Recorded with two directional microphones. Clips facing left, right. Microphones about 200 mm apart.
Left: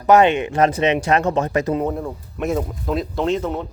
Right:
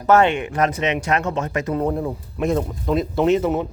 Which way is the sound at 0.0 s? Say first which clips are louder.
Left 2 dB; 15° left (ahead or behind).